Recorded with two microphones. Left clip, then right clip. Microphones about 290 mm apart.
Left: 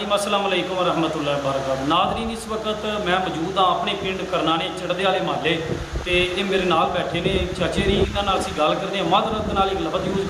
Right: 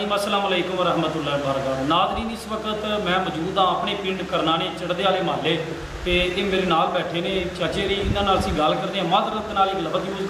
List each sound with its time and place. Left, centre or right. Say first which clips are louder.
0.1 s a man's voice: left 2 dB; centre
8.3 s a man's voice: right 2 dB; centre